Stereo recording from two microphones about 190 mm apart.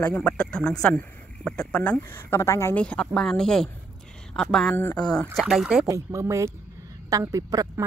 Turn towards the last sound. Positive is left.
turn(degrees=-20)  # may be behind; listen again after turning